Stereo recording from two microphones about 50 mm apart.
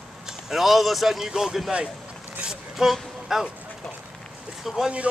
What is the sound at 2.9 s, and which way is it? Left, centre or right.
Speech, centre.